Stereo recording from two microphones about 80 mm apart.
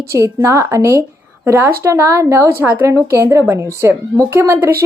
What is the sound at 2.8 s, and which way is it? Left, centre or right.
Speech, right.